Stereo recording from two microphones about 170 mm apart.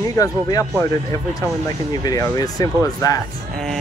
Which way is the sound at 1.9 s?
20° left (ahead or behind).